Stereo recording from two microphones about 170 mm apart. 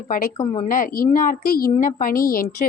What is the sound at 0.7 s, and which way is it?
A woman's voice, 55° left (ahead or behind).